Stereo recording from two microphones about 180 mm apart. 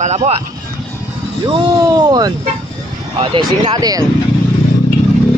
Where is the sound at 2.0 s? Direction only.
20° right (ahead or behind).